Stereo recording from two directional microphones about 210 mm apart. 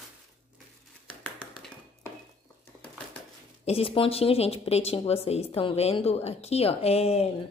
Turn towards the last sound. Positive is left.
turn(degrees=30)  # may be behind; listen again after turning